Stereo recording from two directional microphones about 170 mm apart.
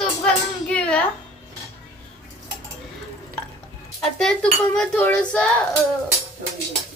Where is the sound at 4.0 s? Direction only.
5° left (ahead or behind).